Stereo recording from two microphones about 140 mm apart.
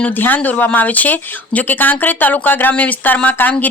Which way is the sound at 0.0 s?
15° left (ahead or behind).